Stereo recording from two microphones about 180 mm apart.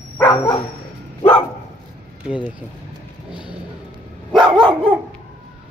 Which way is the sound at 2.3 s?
5° right (ahead or behind).